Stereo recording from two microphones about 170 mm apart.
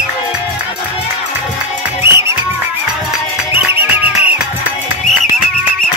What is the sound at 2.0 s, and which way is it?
Music, 15° right (ahead or behind).